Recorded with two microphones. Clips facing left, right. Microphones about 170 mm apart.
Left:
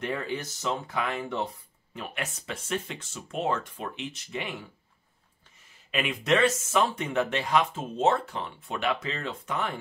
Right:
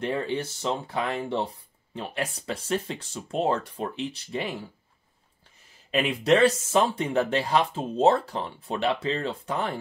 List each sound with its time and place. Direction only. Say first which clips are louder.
0.0 s speech: right 4 dB; 30° right (ahead or behind)
5.9 s speech: right 4 dB; 35° right (ahead or behind)